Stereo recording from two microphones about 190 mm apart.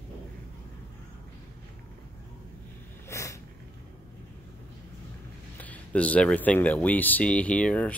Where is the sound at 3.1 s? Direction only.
15° left (ahead or behind).